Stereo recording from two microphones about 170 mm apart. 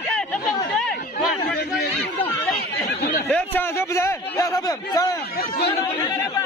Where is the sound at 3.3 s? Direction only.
15° left (ahead or behind).